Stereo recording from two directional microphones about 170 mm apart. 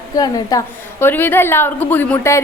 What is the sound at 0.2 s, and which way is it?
A woman's voice, 20° left (ahead or behind).